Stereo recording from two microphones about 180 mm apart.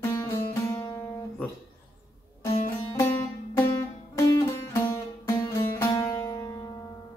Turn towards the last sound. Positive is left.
turn(degrees=20)  # may be behind; listen again after turning